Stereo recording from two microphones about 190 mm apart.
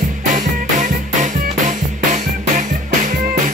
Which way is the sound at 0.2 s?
45° right (ahead or behind).